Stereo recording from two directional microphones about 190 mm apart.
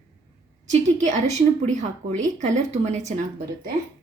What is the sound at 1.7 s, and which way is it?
Speech, 40° right (ahead or behind).